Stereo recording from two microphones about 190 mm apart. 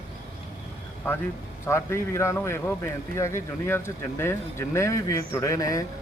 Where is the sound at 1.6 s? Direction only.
15° left (ahead or behind).